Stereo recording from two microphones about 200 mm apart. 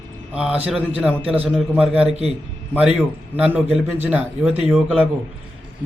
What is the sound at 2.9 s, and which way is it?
A man's voice, 5° right (ahead or behind).